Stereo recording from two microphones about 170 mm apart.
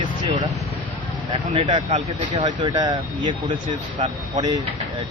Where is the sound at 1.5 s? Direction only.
30° right (ahead or behind).